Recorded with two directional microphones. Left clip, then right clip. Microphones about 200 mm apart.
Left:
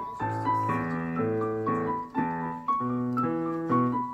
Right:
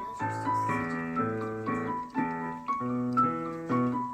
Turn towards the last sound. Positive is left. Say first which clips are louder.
# left 4 dB
turn(degrees=35)  # may be behind; listen again after turning